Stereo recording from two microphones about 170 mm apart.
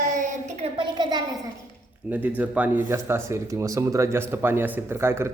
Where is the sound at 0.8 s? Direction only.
25° right (ahead or behind).